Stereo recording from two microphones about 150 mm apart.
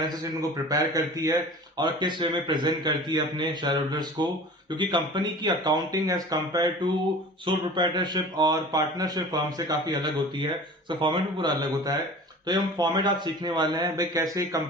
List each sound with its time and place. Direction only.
0.0 s speech: 25° right (ahead or behind)